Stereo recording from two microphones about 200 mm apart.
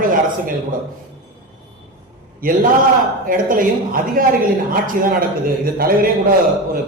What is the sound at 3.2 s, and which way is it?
A man's voice, 45° right (ahead or behind).